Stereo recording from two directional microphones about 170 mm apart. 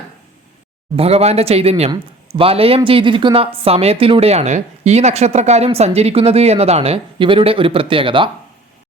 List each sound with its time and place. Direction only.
0.9 s speech: 35° right (ahead or behind)